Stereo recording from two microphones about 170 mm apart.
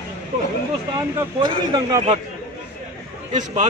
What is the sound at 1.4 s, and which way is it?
Speech, 25° right (ahead or behind).